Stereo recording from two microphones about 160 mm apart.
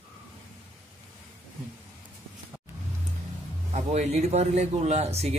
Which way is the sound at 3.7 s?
45° right (ahead or behind).